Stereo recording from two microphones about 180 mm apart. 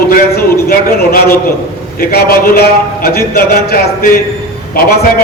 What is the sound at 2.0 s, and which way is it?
A man's voice, 55° left (ahead or behind).